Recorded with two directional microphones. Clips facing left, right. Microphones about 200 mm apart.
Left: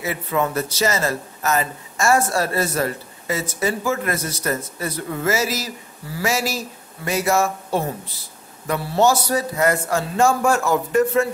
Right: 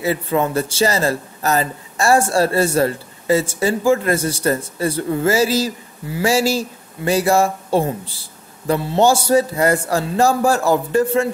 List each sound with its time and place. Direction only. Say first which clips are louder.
0.0 s a man's voice: right 4 dB; 30° right (ahead or behind)